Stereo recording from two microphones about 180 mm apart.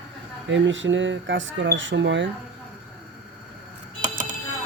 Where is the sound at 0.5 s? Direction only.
90° right.